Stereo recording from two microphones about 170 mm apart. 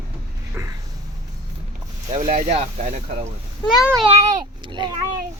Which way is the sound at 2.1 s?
40° right (ahead or behind).